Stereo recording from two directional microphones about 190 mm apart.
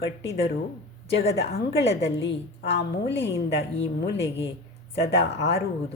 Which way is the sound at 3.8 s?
70° left (ahead or behind).